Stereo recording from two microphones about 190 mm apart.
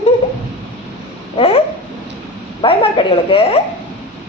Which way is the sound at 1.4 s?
30° left (ahead or behind).